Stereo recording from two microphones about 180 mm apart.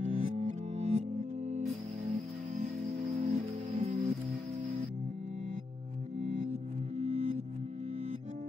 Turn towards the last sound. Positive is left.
turn(degrees=-40)  # may be behind; listen again after turning